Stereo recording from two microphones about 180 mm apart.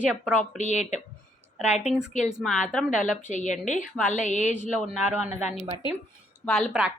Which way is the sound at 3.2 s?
45° left (ahead or behind).